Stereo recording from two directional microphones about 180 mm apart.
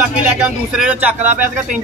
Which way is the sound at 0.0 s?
5° right (ahead or behind).